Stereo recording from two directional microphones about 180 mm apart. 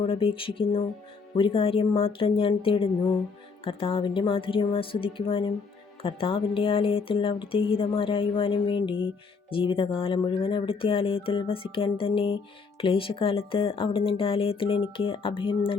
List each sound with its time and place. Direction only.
0.0 s speech: 30° left (ahead or behind)